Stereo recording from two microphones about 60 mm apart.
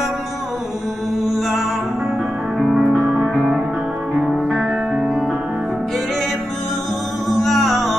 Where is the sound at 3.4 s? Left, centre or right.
Centre.